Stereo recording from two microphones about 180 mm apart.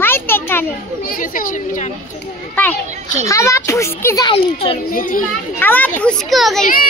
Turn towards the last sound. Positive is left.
turn(degrees=0)  # may be behind; listen again after turning